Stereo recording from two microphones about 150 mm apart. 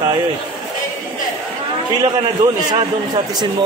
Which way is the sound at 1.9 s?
30° right (ahead or behind).